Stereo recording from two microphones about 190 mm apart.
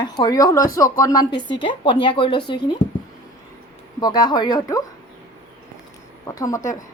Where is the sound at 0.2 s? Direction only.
20° left (ahead or behind).